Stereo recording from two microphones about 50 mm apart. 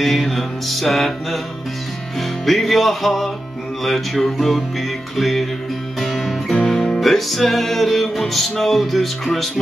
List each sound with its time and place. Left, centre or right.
0.0 s music: centre